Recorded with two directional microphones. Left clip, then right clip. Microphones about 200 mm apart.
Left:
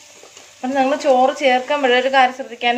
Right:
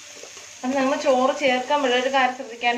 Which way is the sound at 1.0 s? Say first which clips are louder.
Left 5 dB; 50° left (ahead or behind).